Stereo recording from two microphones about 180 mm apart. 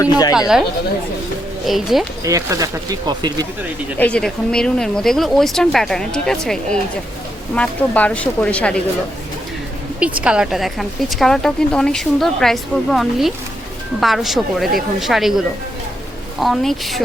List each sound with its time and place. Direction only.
0.0 s speech: 20° left (ahead or behind)
0.3 s a woman's voice: 5° right (ahead or behind)
1.6 s a woman's voice: centre (ahead or behind)
2.2 s speech: 15° right (ahead or behind)
3.9 s a woman's voice: 5° left (ahead or behind)
10.0 s a woman's voice: 5° right (ahead or behind)